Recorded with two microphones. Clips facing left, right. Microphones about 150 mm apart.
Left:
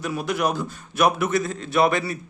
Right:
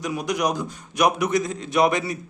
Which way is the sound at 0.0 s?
15° right (ahead or behind).